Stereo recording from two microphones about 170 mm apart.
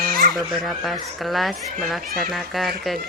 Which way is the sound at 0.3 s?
Centre (ahead or behind).